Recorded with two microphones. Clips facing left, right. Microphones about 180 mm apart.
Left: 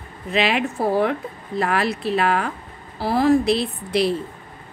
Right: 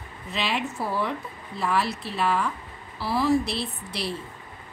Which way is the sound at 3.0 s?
50° left (ahead or behind).